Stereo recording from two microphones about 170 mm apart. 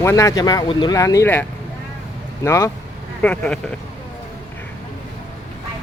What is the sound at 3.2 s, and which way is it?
Speech, 5° left (ahead or behind).